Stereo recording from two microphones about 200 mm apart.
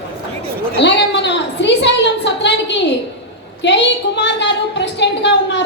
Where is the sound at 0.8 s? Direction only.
60° left (ahead or behind).